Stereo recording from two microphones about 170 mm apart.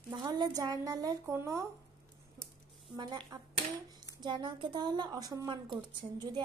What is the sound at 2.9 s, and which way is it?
Speech, 25° right (ahead or behind).